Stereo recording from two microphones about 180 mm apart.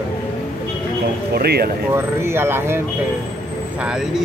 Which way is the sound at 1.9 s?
15° right (ahead or behind).